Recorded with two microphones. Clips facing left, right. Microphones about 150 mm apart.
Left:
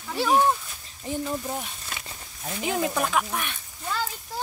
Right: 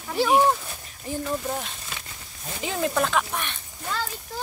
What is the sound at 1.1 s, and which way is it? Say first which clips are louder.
Speech: left 1 dB; 20° left (ahead or behind).